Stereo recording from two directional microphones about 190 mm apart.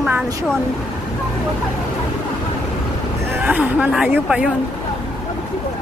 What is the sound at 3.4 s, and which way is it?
A woman's voice, 10° right (ahead or behind).